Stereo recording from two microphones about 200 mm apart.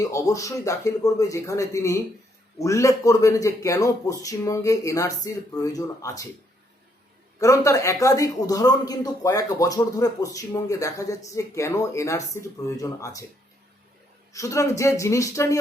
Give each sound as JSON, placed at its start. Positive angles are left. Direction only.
{"t": 0.0, "sound": "speech", "side_deg": 15}
{"t": 7.3, "sound": "speech", "side_deg": 15}
{"t": 14.3, "sound": "speech", "side_deg": 15}